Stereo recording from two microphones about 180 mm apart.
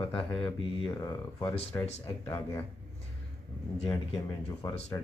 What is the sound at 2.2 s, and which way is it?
Speech, 20° left (ahead or behind).